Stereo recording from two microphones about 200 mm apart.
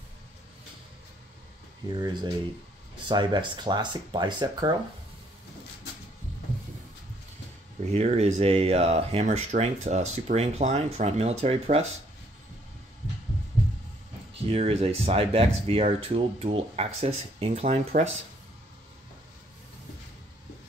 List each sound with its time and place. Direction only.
1.9 s speech: 20° right (ahead or behind)
7.8 s speech: 30° right (ahead or behind)
14.5 s speech: 30° right (ahead or behind)